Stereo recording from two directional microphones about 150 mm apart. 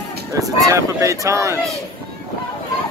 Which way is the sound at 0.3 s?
20° right (ahead or behind).